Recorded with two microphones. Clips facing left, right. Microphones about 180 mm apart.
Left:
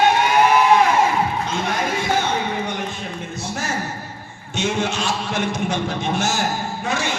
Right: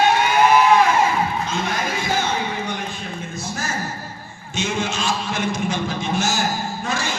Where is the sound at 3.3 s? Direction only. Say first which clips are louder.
Left 2 dB; 70° left (ahead or behind).